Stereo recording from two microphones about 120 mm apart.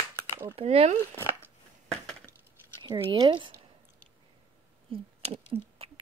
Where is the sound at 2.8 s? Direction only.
40° right (ahead or behind).